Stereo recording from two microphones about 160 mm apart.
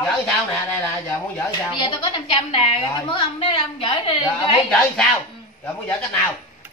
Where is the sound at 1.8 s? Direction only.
35° left (ahead or behind).